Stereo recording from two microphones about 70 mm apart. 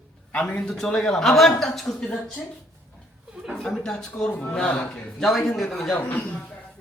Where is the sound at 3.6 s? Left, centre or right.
Centre.